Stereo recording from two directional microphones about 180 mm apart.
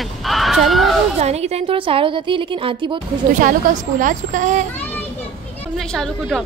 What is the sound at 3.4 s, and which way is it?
A woman's voice, 45° right (ahead or behind).